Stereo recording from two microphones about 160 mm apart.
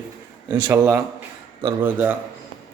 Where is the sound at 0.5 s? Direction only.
15° right (ahead or behind).